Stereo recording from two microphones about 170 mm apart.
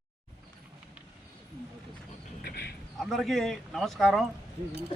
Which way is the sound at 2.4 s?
70° left (ahead or behind).